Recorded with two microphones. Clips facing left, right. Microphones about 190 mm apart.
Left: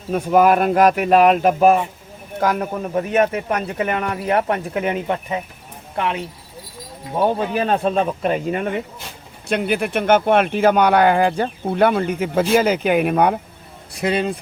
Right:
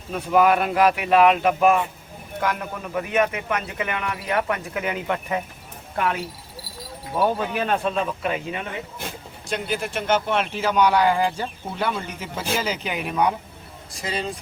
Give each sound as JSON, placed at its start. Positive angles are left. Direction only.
{"t": 0.1, "sound": "speech", "side_deg": 45}
{"t": 9.5, "sound": "speech", "side_deg": 60}